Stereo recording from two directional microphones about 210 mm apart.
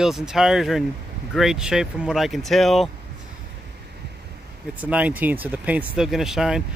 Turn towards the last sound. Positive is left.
turn(degrees=0)  # may be behind; listen again after turning